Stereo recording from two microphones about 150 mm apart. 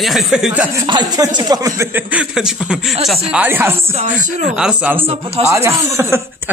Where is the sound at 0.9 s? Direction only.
30° right (ahead or behind).